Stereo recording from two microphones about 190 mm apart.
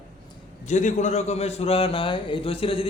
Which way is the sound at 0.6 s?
40° left (ahead or behind).